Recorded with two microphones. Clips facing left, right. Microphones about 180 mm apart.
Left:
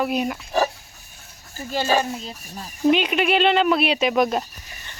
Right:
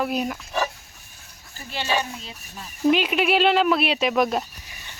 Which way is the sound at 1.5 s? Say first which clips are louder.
Left 5 dB; 40° left (ahead or behind).